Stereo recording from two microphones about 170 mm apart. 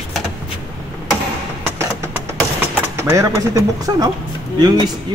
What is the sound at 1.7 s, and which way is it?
Vehicle, 15° right (ahead or behind).